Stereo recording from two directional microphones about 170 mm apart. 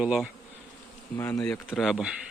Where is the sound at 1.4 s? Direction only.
5° left (ahead or behind).